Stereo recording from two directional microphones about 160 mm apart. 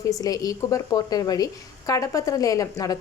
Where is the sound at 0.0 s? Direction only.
20° left (ahead or behind).